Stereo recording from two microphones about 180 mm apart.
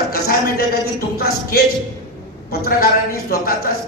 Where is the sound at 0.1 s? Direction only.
60° left (ahead or behind).